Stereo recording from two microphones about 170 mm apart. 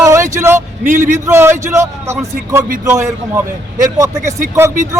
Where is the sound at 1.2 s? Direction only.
15° right (ahead or behind).